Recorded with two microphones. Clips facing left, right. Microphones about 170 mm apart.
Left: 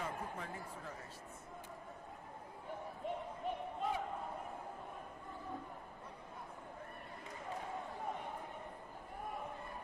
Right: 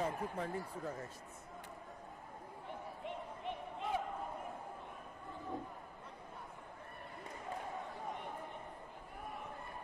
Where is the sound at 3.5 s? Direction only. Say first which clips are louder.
Left 3 dB; 40° left (ahead or behind).